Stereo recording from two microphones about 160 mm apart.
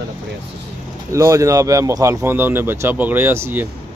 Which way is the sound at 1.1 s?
20° right (ahead or behind).